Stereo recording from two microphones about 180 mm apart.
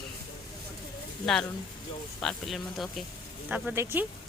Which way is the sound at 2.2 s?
Centre (ahead or behind).